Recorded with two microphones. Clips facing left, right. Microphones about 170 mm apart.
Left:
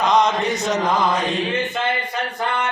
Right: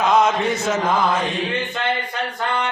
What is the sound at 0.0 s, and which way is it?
Mantra, 5° right (ahead or behind).